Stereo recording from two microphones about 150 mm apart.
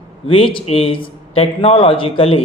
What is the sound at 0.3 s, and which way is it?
Speech, 35° left (ahead or behind).